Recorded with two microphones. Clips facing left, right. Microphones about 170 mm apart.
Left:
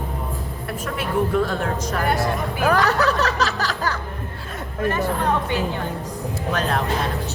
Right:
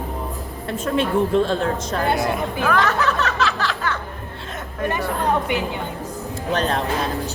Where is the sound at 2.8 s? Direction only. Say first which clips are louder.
Left 1 dB; 40° left (ahead or behind).